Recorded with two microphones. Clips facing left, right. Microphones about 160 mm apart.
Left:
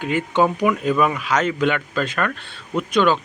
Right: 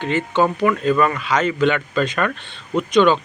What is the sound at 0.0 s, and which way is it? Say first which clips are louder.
Speech: even; 5° left (ahead or behind).